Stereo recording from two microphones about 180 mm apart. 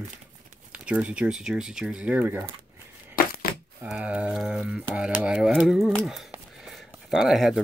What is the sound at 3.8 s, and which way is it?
Speech, 5° right (ahead or behind).